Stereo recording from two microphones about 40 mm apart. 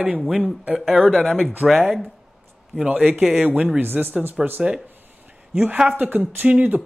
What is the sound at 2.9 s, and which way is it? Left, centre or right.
Speech, right.